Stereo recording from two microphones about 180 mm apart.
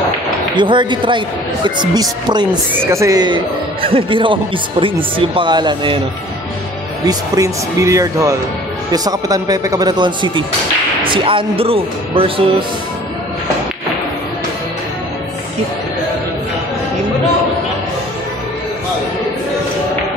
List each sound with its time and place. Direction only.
0.6 s a woman's voice: 25° right (ahead or behind)
2.4 s a woman's voice: 15° right (ahead or behind)
7.1 s a woman's voice: 20° right (ahead or behind)